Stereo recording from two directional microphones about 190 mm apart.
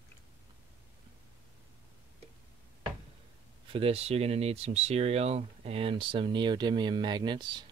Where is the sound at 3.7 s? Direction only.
30° right (ahead or behind).